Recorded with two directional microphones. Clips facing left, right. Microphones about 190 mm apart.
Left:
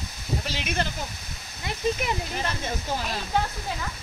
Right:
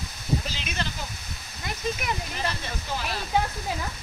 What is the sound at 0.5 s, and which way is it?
Speech, 55° left (ahead or behind).